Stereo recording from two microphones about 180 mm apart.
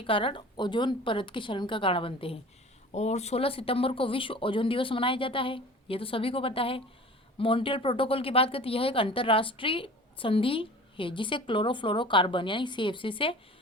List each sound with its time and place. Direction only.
0.0 s a woman's voice: 30° left (ahead or behind)